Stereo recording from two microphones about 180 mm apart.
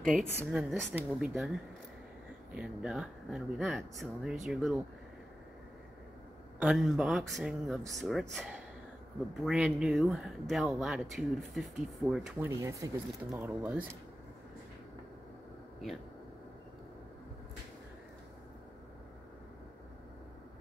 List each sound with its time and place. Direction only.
0.2 s speech: 10° right (ahead or behind)
6.6 s speech: 5° right (ahead or behind)
12.4 s speech: 15° right (ahead or behind)